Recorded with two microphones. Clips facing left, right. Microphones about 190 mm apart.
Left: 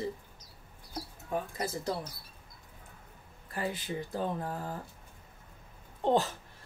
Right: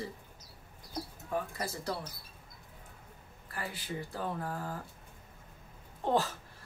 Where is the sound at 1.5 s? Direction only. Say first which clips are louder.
Left 3 dB; 20° left (ahead or behind).